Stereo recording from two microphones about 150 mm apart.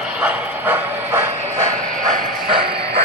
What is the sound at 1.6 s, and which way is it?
Train, 60° right (ahead or behind).